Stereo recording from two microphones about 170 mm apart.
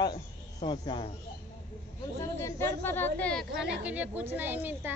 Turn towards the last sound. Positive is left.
turn(degrees=-10)  # may be behind; listen again after turning